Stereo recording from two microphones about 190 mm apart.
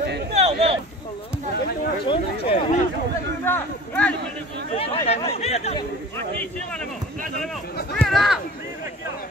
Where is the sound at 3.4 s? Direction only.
10° left (ahead or behind).